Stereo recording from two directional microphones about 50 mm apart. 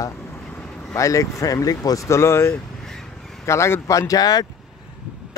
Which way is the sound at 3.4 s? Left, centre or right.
Left.